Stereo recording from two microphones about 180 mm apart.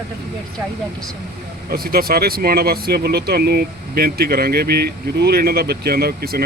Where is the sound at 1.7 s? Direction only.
55° right (ahead or behind).